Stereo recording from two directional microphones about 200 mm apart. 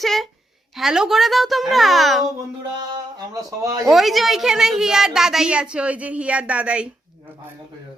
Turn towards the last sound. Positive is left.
turn(degrees=-5)  # may be behind; listen again after turning